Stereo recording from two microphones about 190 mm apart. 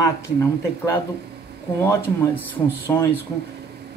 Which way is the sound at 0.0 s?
15° left (ahead or behind).